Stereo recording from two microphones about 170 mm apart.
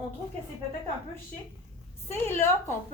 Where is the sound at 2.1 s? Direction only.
15° left (ahead or behind).